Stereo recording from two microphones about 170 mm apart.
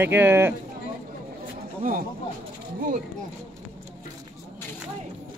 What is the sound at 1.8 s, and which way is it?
Speech, 55° right (ahead or behind).